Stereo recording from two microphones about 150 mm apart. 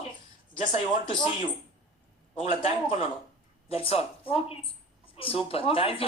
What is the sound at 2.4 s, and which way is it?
A man's voice, 45° left (ahead or behind).